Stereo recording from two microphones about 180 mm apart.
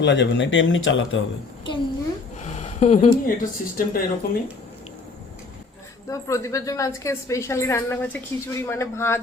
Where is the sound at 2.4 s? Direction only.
40° left (ahead or behind).